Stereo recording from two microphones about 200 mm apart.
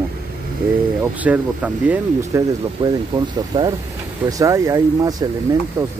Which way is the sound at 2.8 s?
20° right (ahead or behind).